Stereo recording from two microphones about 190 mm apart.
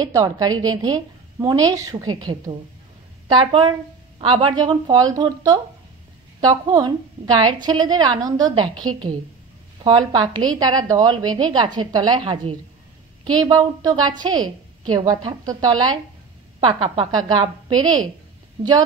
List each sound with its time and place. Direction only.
0.0 s a woman's voice: 20° right (ahead or behind)
9.8 s a woman's voice: 20° right (ahead or behind)